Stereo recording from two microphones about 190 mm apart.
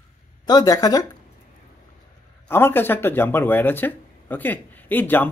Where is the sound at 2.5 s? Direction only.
10° left (ahead or behind).